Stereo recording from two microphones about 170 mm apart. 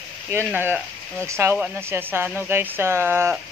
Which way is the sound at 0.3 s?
10° right (ahead or behind).